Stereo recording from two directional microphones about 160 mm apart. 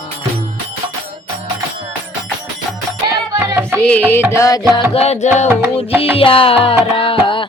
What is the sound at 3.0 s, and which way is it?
Music, 20° right (ahead or behind).